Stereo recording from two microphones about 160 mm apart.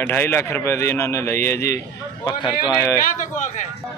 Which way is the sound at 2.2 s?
30° left (ahead or behind).